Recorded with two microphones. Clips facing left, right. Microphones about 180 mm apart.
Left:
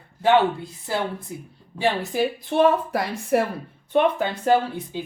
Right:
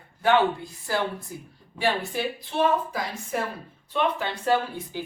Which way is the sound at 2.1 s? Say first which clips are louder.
Left 6 dB; 55° left (ahead or behind).